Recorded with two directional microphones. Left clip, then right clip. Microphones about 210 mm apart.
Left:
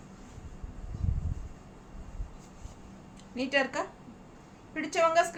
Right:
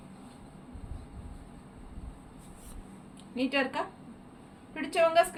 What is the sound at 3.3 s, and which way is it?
A woman's voice, 20° left (ahead or behind).